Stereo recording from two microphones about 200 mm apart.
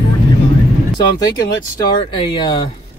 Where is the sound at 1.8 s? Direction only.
25° left (ahead or behind).